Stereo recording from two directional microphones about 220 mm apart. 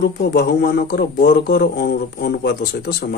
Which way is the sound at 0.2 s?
45° left (ahead or behind).